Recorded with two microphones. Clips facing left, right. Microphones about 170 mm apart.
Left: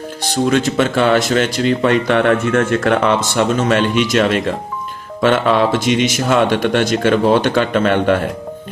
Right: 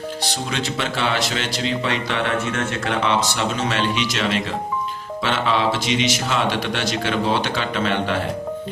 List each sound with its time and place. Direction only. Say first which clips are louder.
0.4 s speech: left 13 dB; 50° left (ahead or behind)